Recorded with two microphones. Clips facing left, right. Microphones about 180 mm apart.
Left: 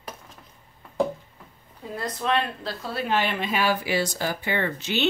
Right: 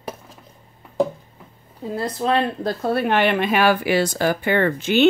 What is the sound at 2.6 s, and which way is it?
Speech, 55° right (ahead or behind).